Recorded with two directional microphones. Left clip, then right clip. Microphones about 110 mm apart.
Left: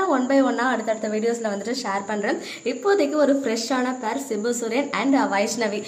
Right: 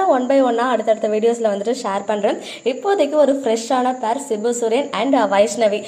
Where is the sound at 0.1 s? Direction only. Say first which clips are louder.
Right 5 dB; 5° right (ahead or behind).